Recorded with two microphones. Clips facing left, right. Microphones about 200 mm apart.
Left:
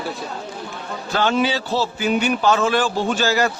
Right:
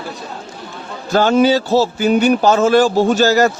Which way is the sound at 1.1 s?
45° right (ahead or behind).